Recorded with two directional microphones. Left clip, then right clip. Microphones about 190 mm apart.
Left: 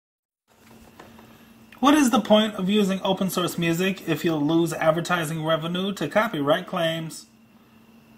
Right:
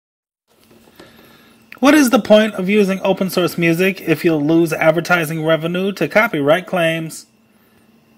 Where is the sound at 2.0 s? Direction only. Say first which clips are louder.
Right 8 dB; 50° right (ahead or behind).